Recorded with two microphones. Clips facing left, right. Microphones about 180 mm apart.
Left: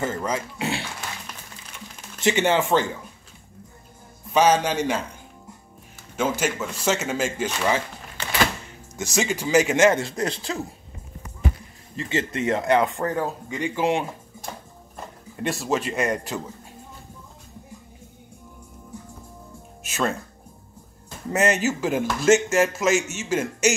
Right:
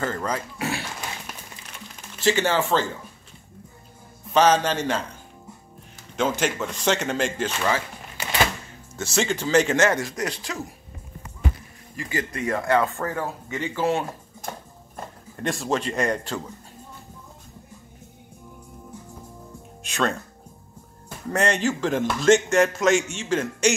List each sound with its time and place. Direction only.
0.0 s speech: 20° left (ahead or behind)
2.2 s speech: 20° left (ahead or behind)
4.3 s speech: 10° left (ahead or behind)
6.1 s speech: 5° left (ahead or behind)
8.9 s speech: 15° left (ahead or behind)
12.0 s speech: 25° left (ahead or behind)
15.4 s a man's voice: 5° left (ahead or behind)
19.8 s speech: 5° left (ahead or behind)
21.3 s a man's voice: 5° left (ahead or behind)